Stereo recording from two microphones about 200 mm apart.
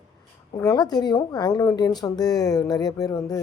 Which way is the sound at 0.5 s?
20° left (ahead or behind).